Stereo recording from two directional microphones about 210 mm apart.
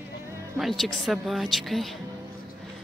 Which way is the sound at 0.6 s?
Centre (ahead or behind).